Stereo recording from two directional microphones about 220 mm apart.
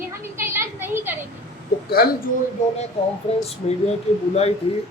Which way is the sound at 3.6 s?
30° left (ahead or behind).